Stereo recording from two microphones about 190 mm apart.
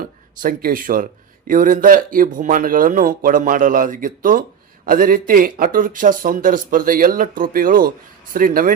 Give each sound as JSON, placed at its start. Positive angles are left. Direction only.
{"t": 0.0, "sound": "speech", "side_deg": -50}